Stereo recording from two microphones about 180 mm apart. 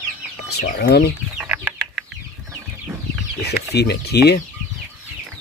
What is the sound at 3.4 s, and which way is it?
Speech, 65° left (ahead or behind).